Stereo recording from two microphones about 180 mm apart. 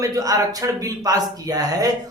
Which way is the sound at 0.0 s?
20° right (ahead or behind).